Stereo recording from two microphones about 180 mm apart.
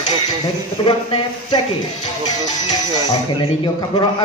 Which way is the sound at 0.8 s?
25° left (ahead or behind).